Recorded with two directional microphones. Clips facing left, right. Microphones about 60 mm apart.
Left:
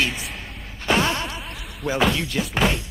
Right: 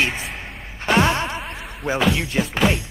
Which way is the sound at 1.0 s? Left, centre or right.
Right.